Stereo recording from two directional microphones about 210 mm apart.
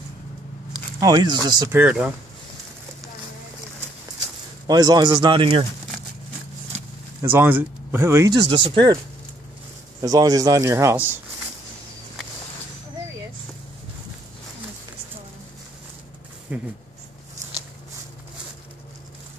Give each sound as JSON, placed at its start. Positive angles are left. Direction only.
{"t": 1.0, "sound": "speech", "side_deg": -20}
{"t": 1.8, "sound": "speech", "side_deg": -5}
{"t": 4.6, "sound": "speech", "side_deg": -20}
{"t": 7.2, "sound": "speech", "side_deg": -10}
{"t": 10.0, "sound": "speech", "side_deg": -15}
{"t": 16.5, "sound": "speech", "side_deg": -5}